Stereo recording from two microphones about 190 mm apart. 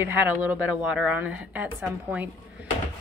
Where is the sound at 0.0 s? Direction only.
10° right (ahead or behind).